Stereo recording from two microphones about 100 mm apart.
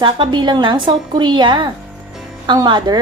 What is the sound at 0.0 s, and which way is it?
A woman's voice, 50° right (ahead or behind).